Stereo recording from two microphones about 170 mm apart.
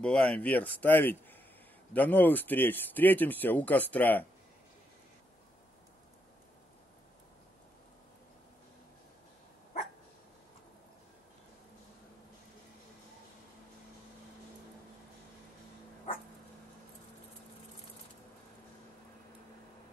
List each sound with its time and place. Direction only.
0.0 s speech: 5° left (ahead or behind)